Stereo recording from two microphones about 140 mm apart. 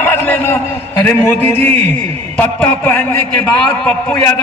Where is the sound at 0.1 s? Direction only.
15° left (ahead or behind).